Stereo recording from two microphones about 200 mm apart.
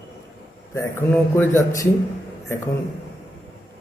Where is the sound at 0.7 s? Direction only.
10° left (ahead or behind).